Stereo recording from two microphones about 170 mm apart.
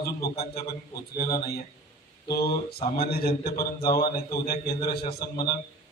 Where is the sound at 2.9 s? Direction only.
65° left (ahead or behind).